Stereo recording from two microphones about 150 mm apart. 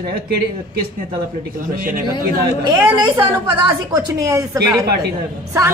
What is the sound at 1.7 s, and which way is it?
Speech, 75° right (ahead or behind).